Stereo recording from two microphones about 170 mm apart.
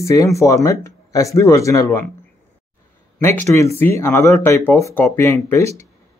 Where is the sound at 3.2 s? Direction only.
15° left (ahead or behind).